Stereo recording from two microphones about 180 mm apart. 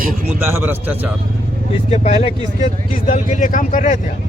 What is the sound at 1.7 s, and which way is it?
Speech, 35° left (ahead or behind).